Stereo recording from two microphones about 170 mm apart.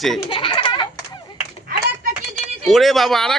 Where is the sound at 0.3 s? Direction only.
30° left (ahead or behind).